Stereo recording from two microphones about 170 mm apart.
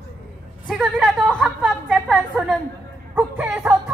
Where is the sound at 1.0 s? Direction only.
5° left (ahead or behind).